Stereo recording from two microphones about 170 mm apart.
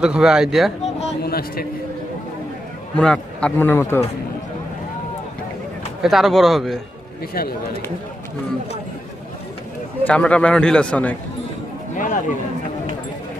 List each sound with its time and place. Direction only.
0.0 s speech: 5° right (ahead or behind)
1.2 s a man's voice: 65° left (ahead or behind)
3.0 s a man's voice: 5° left (ahead or behind)
6.0 s speech: centre (ahead or behind)
7.3 s speech: 60° left (ahead or behind)
10.0 s a man's voice: 5° left (ahead or behind)
11.9 s chatter: 50° left (ahead or behind)